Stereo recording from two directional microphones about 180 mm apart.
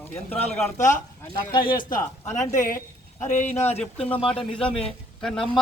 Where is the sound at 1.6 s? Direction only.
50° left (ahead or behind).